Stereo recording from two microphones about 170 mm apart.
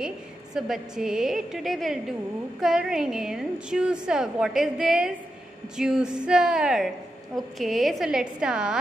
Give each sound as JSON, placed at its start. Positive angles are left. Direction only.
{"t": 0.6, "sound": "a woman's voice", "side_deg": -5}